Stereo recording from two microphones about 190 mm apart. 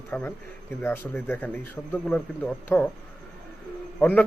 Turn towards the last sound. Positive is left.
turn(degrees=10)  # may be behind; listen again after turning